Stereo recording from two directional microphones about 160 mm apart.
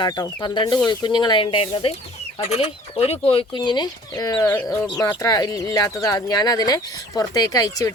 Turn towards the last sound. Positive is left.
turn(degrees=20)  # may be behind; listen again after turning